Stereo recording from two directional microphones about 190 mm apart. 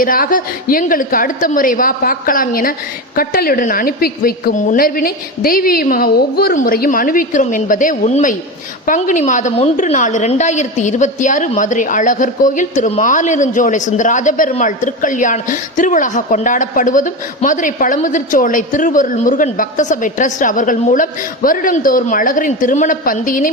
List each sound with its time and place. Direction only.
0.0 s a woman's voice: 45° left (ahead or behind)